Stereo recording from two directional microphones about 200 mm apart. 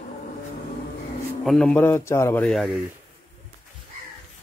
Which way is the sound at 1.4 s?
Centre (ahead or behind).